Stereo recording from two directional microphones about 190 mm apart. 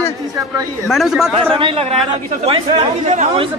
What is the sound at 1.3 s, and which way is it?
Speech, 30° right (ahead or behind).